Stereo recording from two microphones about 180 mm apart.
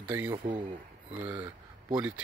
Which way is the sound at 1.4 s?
20° right (ahead or behind).